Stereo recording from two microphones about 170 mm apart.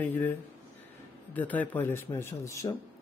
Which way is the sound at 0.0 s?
10° left (ahead or behind).